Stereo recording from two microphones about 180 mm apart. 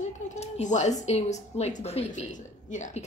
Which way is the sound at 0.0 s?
40° left (ahead or behind).